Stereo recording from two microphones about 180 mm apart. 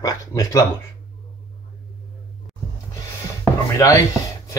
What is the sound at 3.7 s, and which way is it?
Speech, 20° left (ahead or behind).